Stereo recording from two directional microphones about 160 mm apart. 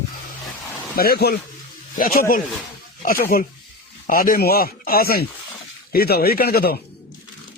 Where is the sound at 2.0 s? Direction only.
65° left (ahead or behind).